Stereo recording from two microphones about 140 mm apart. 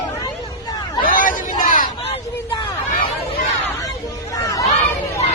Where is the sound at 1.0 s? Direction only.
80° left.